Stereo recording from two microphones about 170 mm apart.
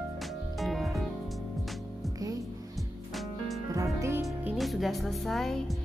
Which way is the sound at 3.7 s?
20° right (ahead or behind).